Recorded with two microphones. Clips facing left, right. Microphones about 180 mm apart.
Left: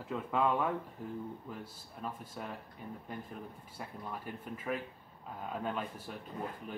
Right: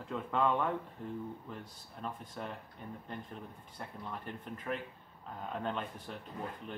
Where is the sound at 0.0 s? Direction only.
5° left (ahead or behind).